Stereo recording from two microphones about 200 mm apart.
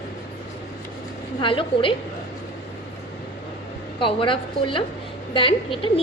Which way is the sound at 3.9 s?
25° left (ahead or behind).